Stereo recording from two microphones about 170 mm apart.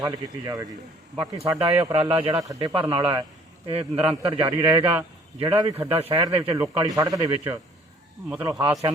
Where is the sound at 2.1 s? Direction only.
35° right (ahead or behind).